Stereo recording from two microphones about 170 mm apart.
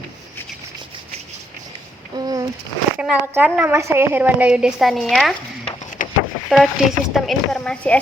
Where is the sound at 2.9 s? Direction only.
10° right (ahead or behind).